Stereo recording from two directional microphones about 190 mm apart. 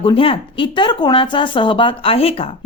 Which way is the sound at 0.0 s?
30° left (ahead or behind).